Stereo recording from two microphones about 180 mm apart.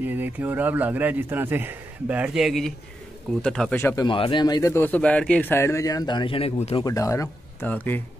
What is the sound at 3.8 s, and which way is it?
Speech, 15° left (ahead or behind).